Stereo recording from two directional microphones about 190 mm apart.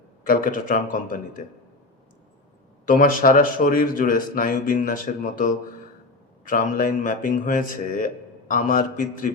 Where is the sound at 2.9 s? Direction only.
45° left (ahead or behind).